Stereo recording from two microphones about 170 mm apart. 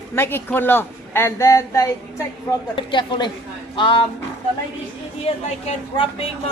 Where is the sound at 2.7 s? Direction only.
30° left (ahead or behind).